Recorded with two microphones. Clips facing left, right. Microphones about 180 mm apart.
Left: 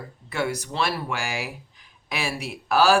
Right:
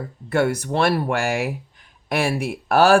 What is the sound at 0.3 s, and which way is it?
Speech, 55° right (ahead or behind).